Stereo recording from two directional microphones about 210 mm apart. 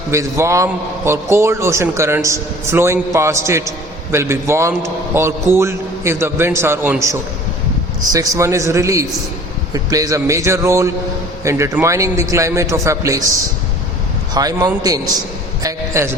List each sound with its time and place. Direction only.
0.1 s a man's voice: 15° right (ahead or behind)
14.3 s a man's voice: 15° right (ahead or behind)